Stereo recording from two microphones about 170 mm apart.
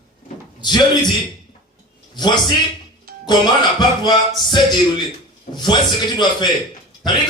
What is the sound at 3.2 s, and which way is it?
Speech, 25° left (ahead or behind).